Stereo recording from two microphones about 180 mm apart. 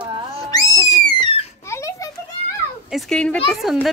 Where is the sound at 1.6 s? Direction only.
15° left (ahead or behind).